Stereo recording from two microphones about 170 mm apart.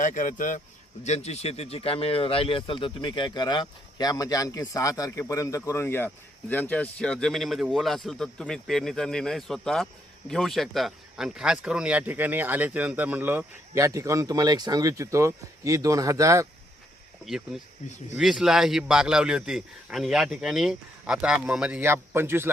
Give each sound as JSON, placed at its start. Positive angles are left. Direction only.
{"t": 0.0, "sound": "a man's voice", "side_deg": 50}
{"t": 17.2, "sound": "a man's voice", "side_deg": 0}